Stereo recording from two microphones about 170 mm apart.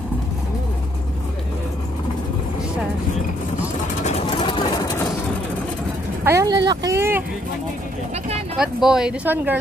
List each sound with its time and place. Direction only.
4.0 s vehicle: 35° left (ahead or behind)
6.2 s vehicle: 20° right (ahead or behind)
8.5 s speech: 5° right (ahead or behind)